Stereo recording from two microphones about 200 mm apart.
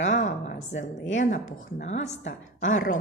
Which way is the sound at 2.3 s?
70° left (ahead or behind).